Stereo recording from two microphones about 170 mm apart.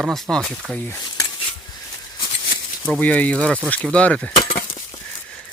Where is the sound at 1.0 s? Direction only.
25° left (ahead or behind).